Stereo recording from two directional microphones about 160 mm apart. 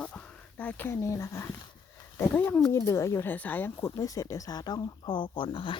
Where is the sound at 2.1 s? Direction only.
10° left (ahead or behind).